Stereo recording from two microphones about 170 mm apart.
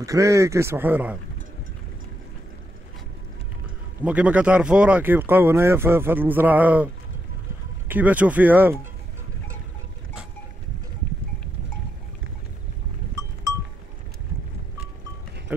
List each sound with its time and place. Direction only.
0.0 s speech: 20° right (ahead or behind)
4.0 s speech: 10° right (ahead or behind)
7.9 s speech: 10° right (ahead or behind)